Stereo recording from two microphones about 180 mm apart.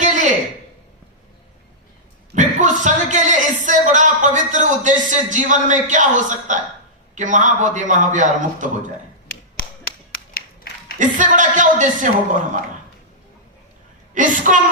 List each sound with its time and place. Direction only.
0.0 s a sound: 45° right (ahead or behind)
2.3 s a sound: 45° right (ahead or behind)
2.8 s a man's voice: 45° right (ahead or behind)
9.8 s clapping: 55° left (ahead or behind)
10.9 s a man's voice: 45° right (ahead or behind)
14.1 s a man's voice: 45° right (ahead or behind)